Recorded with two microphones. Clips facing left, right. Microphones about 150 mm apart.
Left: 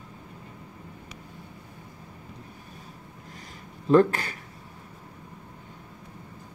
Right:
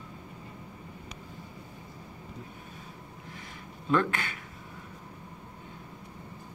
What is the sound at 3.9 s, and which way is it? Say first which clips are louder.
Speech: left 8 dB; 35° left (ahead or behind).